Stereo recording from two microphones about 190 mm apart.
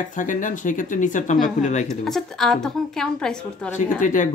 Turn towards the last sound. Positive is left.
turn(degrees=40)  # may be behind; listen again after turning